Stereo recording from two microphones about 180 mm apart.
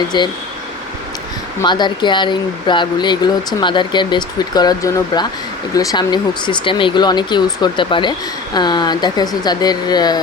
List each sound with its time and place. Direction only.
0.1 s speech: 25° left (ahead or behind)
1.6 s speech: 25° left (ahead or behind)